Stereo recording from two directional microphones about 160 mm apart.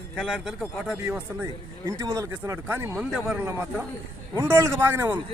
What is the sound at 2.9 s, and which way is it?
Speech, 5° right (ahead or behind).